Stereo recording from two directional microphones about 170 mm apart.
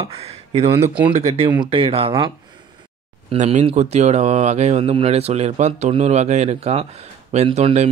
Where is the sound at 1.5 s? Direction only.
30° right (ahead or behind).